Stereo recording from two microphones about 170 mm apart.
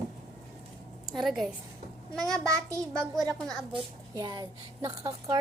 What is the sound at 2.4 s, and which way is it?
Speech, 20° right (ahead or behind).